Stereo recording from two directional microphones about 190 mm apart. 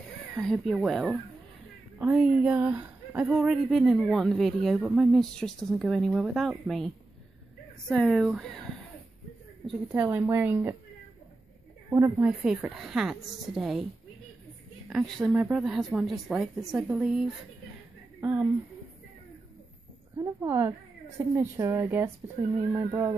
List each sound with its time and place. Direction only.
0.3 s speech: centre (ahead or behind)
7.9 s speech: centre (ahead or behind)
10.0 s speech: 15° right (ahead or behind)
11.9 s speech: 15° right (ahead or behind)
12.3 s speech: 5° right (ahead or behind)
14.9 s speech: centre (ahead or behind)
18.2 s speech: 5° right (ahead or behind)
20.2 s speech: 15° right (ahead or behind)